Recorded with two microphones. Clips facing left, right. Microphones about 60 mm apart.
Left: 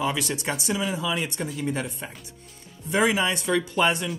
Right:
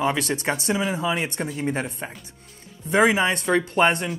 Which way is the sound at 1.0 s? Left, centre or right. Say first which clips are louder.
Right 3 dB; right.